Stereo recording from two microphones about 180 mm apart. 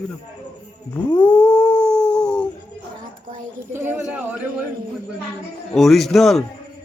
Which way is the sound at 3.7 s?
10° right (ahead or behind).